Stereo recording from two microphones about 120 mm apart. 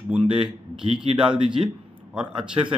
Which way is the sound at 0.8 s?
50° right (ahead or behind).